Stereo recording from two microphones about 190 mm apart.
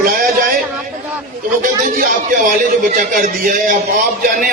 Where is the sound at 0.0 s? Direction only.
50° right (ahead or behind).